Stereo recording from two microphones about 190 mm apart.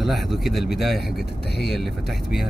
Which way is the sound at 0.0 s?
Centre (ahead or behind).